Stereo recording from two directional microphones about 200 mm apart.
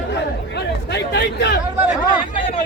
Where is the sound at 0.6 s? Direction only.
60° left (ahead or behind).